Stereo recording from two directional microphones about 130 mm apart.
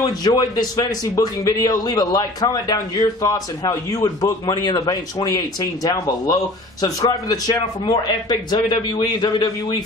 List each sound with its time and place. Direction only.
0.2 s a man's voice: 30° left (ahead or behind)